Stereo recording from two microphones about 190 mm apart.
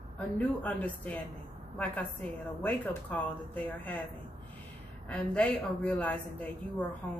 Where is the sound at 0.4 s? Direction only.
10° left (ahead or behind).